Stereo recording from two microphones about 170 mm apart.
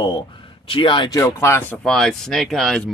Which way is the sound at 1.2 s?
15° left (ahead or behind).